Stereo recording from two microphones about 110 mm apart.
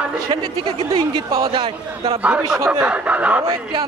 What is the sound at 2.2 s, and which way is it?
Speech, 10° right (ahead or behind).